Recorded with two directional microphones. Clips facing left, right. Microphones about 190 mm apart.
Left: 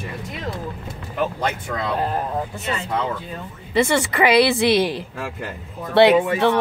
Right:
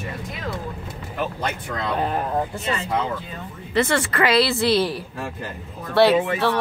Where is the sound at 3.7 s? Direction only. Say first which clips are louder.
Left 2 dB; 10° left (ahead or behind).